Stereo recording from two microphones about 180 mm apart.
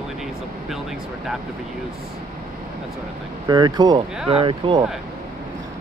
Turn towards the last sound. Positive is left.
turn(degrees=-30)  # may be behind; listen again after turning